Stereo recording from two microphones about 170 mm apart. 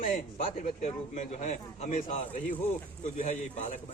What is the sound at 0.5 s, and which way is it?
A man's voice, 45° left (ahead or behind).